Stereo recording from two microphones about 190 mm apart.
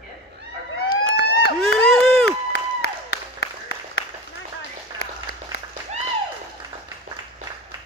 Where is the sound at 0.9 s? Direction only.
60° left (ahead or behind).